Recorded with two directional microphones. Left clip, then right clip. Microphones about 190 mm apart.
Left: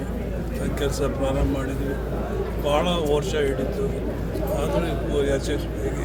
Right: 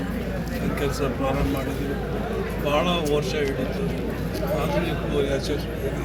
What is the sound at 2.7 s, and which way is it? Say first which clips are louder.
Speech: left 1 dB; 30° left (ahead or behind).